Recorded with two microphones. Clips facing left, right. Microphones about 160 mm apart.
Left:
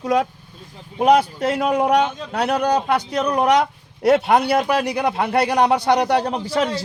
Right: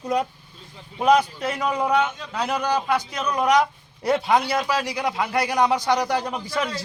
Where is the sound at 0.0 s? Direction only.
90° left.